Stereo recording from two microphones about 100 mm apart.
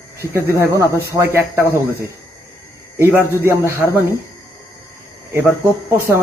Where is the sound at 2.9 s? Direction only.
25° right (ahead or behind).